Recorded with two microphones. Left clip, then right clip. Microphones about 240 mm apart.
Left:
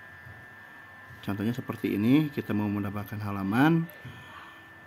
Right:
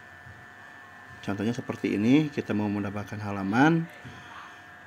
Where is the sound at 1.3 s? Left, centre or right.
Centre.